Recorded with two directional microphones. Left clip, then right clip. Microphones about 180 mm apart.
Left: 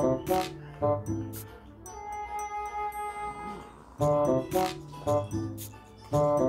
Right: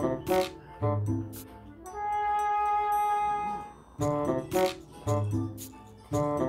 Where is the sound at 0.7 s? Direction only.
15° right (ahead or behind).